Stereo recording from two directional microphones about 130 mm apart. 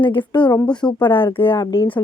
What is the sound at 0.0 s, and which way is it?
Speech, 40° left (ahead or behind).